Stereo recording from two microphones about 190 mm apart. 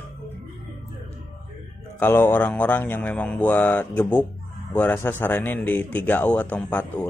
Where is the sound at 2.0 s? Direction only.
10° left (ahead or behind).